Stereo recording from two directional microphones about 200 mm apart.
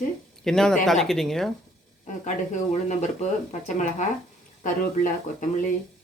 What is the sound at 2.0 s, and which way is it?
Speech, 35° left (ahead or behind).